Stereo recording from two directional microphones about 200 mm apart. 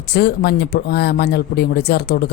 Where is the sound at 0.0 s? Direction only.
55° left (ahead or behind).